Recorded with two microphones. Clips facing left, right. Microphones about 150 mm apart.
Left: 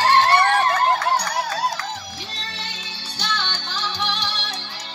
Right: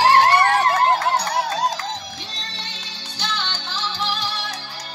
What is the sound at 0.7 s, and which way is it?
Music, 30° right (ahead or behind).